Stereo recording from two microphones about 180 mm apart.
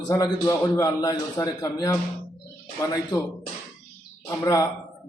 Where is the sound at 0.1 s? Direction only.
15° left (ahead or behind).